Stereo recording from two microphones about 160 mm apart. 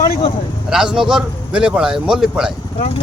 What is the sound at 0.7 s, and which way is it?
Speech, 5° right (ahead or behind).